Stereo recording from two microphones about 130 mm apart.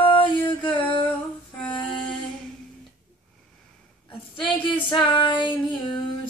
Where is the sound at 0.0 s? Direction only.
40° left (ahead or behind).